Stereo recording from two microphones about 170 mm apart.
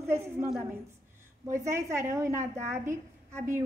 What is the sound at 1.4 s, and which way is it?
A child's voice, 15° right (ahead or behind).